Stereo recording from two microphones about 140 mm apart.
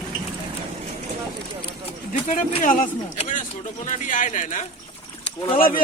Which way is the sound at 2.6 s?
65° left (ahead or behind).